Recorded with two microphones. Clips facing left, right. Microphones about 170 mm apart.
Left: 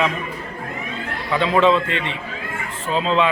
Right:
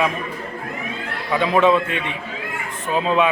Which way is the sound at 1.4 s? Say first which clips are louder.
Even; 10° right (ahead or behind).